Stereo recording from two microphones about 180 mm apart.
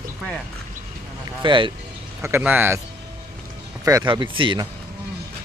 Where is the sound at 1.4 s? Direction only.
25° right (ahead or behind).